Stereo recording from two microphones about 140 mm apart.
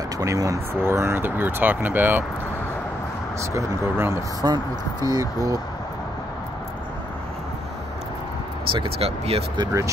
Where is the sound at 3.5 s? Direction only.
20° right (ahead or behind).